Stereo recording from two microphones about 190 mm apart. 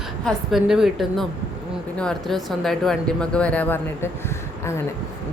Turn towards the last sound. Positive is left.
turn(degrees=10)  # may be behind; listen again after turning